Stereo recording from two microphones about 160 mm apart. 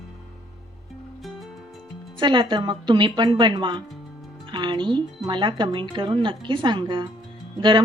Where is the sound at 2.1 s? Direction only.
30° right (ahead or behind).